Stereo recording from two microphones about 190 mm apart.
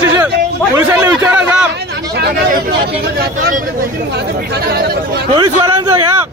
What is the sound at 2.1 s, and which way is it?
Speech, 55° right (ahead or behind).